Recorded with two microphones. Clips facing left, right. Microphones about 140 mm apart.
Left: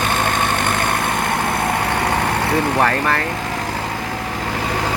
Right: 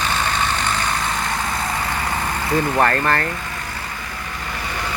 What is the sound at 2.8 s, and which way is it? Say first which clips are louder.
Speech: even; 5° left (ahead or behind).